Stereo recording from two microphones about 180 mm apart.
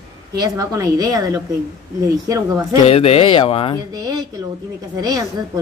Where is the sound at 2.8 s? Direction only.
35° left (ahead or behind).